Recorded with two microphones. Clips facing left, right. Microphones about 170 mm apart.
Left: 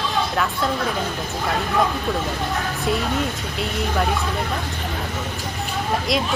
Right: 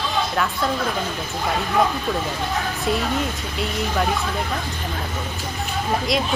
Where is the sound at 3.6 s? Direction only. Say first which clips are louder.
Even; centre (ahead or behind).